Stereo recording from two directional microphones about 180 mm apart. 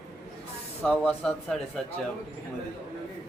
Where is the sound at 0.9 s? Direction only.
5° left (ahead or behind).